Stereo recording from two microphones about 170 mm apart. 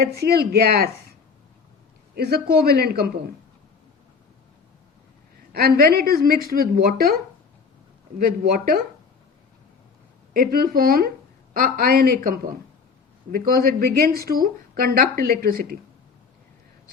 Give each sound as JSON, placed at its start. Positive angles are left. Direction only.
{"t": 0.0, "sound": "a woman's voice", "side_deg": -65}
{"t": 2.1, "sound": "a man's voice", "side_deg": -70}
{"t": 5.5, "sound": "a woman's voice", "side_deg": -60}
{"t": 8.2, "sound": "a woman's voice", "side_deg": -60}
{"t": 10.3, "sound": "a woman's voice", "side_deg": -60}